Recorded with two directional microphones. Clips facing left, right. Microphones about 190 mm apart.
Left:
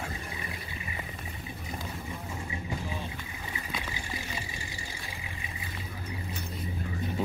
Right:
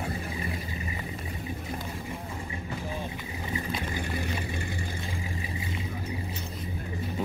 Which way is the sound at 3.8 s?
55° right (ahead or behind).